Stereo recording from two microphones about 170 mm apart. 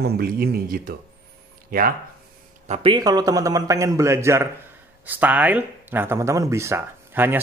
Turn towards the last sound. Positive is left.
turn(degrees=-10)  # may be behind; listen again after turning